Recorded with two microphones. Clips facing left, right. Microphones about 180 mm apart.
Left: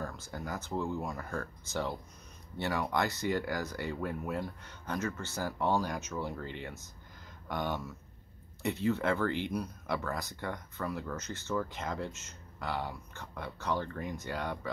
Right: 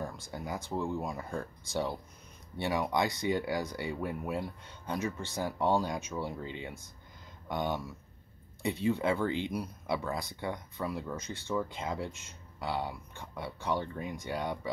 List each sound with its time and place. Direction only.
0.0 s speech: 15° right (ahead or behind)